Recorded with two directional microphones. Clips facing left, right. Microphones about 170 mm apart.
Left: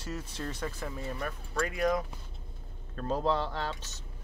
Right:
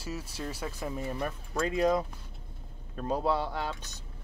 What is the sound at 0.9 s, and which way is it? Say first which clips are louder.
Speech: right 3 dB; 20° right (ahead or behind).